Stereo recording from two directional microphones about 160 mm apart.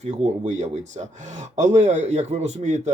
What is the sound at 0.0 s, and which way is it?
Speech, 45° right (ahead or behind).